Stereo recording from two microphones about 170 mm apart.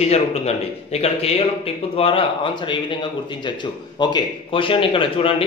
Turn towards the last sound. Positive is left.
turn(degrees=30)  # may be behind; listen again after turning